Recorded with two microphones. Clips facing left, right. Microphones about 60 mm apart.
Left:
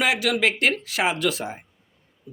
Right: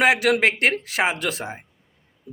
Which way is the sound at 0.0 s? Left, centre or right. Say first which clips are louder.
Right 4 dB; right.